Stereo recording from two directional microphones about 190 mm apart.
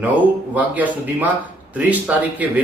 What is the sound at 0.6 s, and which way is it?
A man's voice, 10° right (ahead or behind).